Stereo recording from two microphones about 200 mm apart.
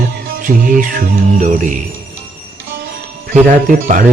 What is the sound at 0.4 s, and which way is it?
Speech, 45° right (ahead or behind).